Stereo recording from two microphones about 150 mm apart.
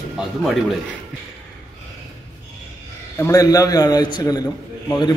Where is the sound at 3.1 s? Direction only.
20° left (ahead or behind).